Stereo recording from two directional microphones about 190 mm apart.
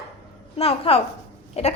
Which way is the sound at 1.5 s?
35° left (ahead or behind).